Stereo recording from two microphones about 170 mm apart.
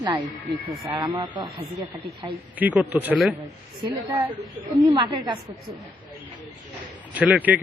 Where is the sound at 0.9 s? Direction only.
25° right (ahead or behind).